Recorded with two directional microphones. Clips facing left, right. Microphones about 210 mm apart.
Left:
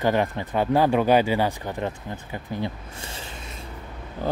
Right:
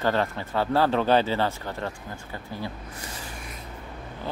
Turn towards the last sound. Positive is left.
turn(degrees=25)  # may be behind; listen again after turning